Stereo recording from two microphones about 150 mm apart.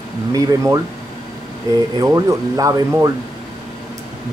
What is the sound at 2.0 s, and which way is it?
Speech, 25° right (ahead or behind).